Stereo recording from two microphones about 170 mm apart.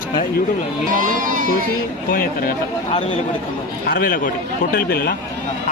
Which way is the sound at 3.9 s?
55° left (ahead or behind).